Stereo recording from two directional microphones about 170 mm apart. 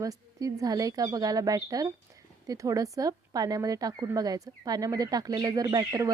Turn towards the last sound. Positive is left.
turn(degrees=-20)  # may be behind; listen again after turning